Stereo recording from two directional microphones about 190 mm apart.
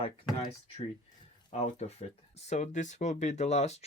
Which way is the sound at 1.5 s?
35° left (ahead or behind).